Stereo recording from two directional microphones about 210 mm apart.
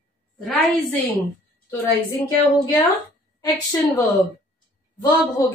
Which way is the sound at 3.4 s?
15° left (ahead or behind).